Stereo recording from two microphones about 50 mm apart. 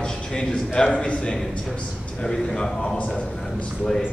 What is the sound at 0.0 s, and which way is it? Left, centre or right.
A man's voice, centre.